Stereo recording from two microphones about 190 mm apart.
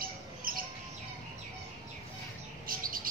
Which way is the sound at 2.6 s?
50° right (ahead or behind).